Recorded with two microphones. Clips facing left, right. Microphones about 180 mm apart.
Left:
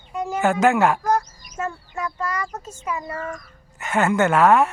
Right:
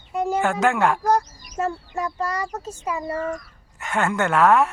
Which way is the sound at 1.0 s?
35° right (ahead or behind).